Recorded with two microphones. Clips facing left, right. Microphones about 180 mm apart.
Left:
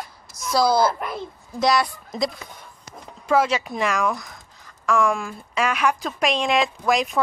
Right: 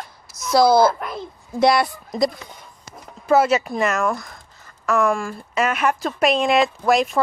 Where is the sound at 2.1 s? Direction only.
Centre (ahead or behind).